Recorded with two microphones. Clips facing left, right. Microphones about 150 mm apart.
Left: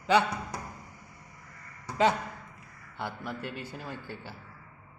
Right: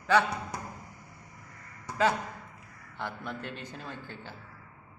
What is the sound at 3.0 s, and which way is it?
A man's voice, 10° left (ahead or behind).